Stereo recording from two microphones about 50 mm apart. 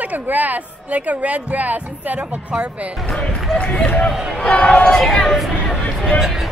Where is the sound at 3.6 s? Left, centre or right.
Left.